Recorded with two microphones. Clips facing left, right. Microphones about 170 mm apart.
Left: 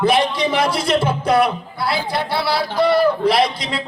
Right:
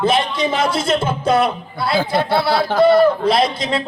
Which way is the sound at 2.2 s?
50° right (ahead or behind).